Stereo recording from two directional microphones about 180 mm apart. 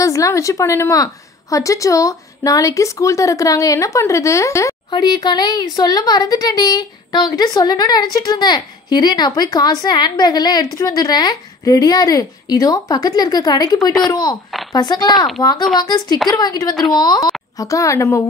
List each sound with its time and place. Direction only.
0.0 s a woman's voice: 15° left (ahead or behind)
16.7 s speech: centre (ahead or behind)
17.0 s a woman's voice: 25° left (ahead or behind)